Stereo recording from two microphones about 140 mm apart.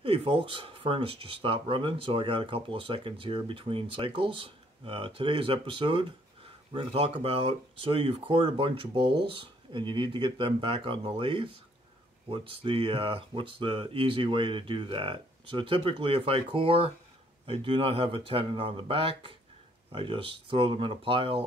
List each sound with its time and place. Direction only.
0.0 s speech: 40° right (ahead or behind)